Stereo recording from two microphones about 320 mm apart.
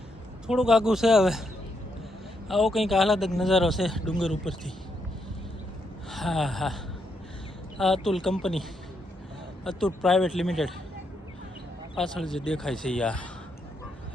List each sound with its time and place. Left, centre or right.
0.4 s speech: centre
2.5 s speech: centre
6.1 s speech: centre
8.0 s speech: centre
9.6 s speech: centre
11.9 s speech: centre